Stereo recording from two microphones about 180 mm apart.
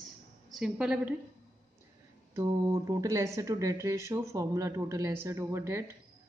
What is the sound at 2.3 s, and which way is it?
A woman's voice, 20° right (ahead or behind).